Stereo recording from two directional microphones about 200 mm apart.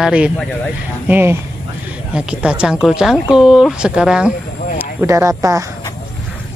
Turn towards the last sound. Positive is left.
turn(degrees=-15)  # may be behind; listen again after turning